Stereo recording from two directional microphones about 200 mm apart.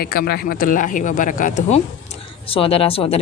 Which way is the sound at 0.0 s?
50° left (ahead or behind).